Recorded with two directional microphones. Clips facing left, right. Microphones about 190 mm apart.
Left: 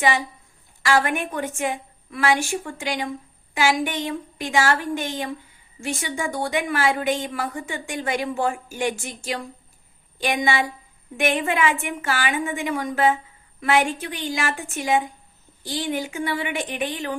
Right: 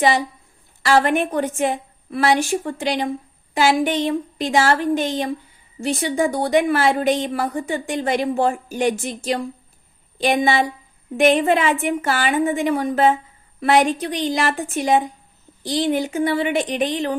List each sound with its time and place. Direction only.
0.8 s a woman's voice: 35° right (ahead or behind)